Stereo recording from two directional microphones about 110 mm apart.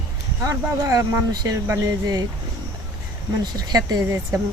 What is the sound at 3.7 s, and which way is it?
Speech, 35° right (ahead or behind).